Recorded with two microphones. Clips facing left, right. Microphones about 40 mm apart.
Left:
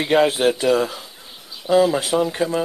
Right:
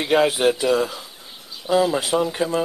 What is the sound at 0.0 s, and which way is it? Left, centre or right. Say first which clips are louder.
Speech: left 1 dB; centre.